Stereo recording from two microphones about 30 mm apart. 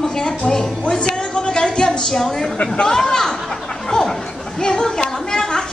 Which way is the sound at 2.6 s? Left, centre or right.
Left.